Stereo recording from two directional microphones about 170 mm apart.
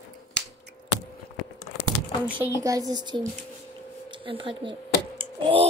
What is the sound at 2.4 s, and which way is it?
Speech, 20° right (ahead or behind).